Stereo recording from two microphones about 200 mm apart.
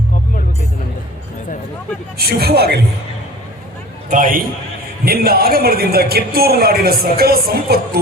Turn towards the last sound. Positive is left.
turn(degrees=-50)  # may be behind; listen again after turning